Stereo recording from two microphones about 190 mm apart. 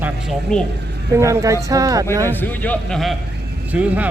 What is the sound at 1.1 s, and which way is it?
Speech, 15° right (ahead or behind).